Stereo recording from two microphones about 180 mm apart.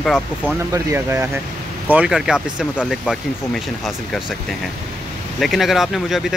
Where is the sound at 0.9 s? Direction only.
15° right (ahead or behind).